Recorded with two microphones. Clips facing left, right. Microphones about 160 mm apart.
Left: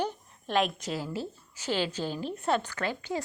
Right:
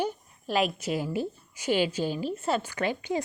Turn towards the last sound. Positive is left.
turn(degrees=-15)  # may be behind; listen again after turning